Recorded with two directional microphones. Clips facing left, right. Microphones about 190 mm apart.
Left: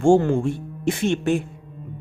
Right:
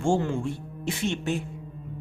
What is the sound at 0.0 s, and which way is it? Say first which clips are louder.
A man's voice: left 8 dB; 50° left (ahead or behind).